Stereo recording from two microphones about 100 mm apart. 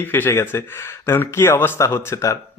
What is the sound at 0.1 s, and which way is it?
Speech, 25° left (ahead or behind).